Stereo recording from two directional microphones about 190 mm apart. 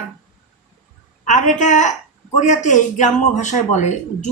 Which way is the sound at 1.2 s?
40° left (ahead or behind).